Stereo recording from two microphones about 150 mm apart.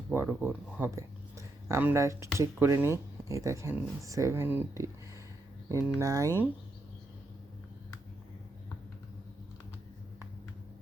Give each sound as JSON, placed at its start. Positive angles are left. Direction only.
{"t": 0.1, "sound": "speech", "side_deg": -15}